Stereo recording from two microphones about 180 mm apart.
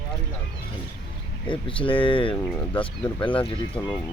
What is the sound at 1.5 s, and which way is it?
Speech, 30° left (ahead or behind).